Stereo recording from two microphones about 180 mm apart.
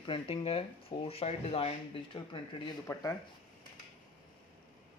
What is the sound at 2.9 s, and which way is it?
Speech, 15° left (ahead or behind).